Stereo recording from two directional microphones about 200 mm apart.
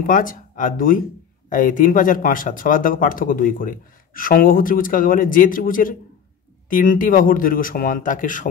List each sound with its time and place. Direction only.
0.0 s speech: 45° left (ahead or behind)